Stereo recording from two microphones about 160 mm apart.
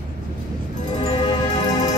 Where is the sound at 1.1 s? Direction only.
30° left (ahead or behind).